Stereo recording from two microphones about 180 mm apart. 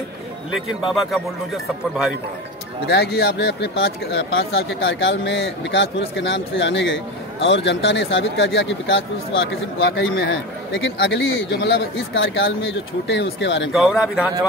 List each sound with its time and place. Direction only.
0.9 s speech: centre (ahead or behind)
2.9 s speech: 65° left (ahead or behind)
4.6 s speech: 85° left
13.7 s speech: centre (ahead or behind)